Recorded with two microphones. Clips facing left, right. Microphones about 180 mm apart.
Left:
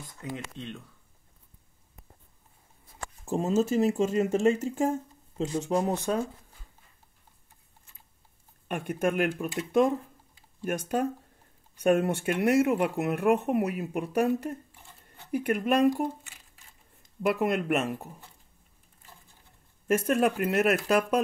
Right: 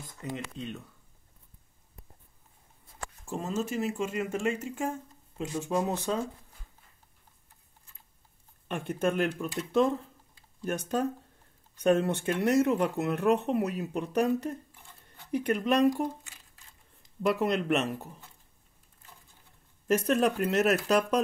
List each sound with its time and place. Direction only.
0.5 s speech: 5° right (ahead or behind)
3.3 s speech: 35° left (ahead or behind)
5.4 s speech: 20° left (ahead or behind)
8.6 s speech: 10° left (ahead or behind)
17.2 s speech: 5° left (ahead or behind)
20.1 s speech: 5° left (ahead or behind)